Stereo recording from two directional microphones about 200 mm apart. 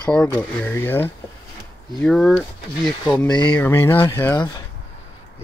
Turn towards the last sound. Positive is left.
turn(degrees=10)  # may be behind; listen again after turning